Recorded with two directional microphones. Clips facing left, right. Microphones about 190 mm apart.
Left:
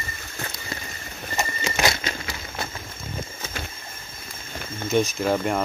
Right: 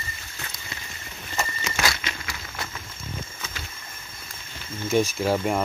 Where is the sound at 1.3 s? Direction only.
25° left (ahead or behind).